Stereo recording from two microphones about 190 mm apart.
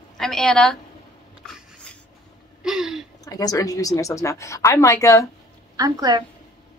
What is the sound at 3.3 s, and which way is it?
Speech, 20° left (ahead or behind).